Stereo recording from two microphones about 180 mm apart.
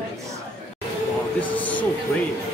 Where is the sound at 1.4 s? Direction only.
10° left (ahead or behind).